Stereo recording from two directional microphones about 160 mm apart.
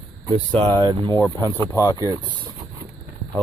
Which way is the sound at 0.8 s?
25° right (ahead or behind).